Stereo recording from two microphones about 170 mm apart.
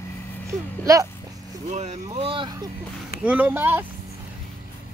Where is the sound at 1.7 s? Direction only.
40° right (ahead or behind).